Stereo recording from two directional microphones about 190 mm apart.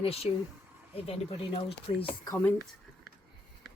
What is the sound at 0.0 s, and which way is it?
Speech, 30° left (ahead or behind).